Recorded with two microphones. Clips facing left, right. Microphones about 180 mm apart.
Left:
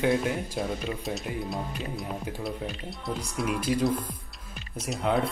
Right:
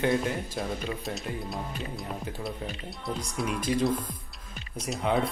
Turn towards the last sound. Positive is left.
turn(degrees=0)  # may be behind; listen again after turning